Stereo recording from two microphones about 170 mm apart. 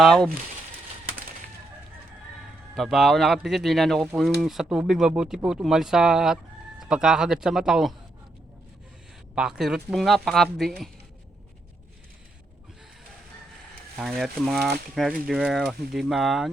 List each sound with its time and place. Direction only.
0.0 s speech: 5° left (ahead or behind)
2.7 s speech: centre (ahead or behind)
9.3 s speech: 5° right (ahead or behind)
13.9 s speech: centre (ahead or behind)